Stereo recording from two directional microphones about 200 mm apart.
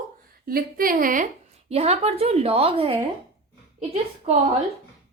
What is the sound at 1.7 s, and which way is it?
A woman's voice, 30° right (ahead or behind).